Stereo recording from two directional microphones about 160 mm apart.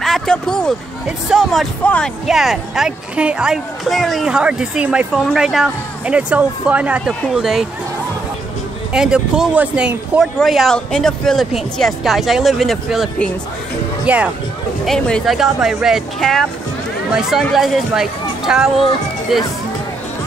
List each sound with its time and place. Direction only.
0.0 s a sound: 5° left (ahead or behind)
1.0 s speech: centre (ahead or behind)
8.9 s speech: 5° right (ahead or behind)
14.9 s speech: 5° left (ahead or behind)